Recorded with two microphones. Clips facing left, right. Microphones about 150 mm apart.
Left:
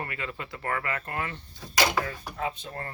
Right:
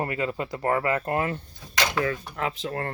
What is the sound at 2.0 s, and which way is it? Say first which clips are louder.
Speech: right 5 dB; 90° right.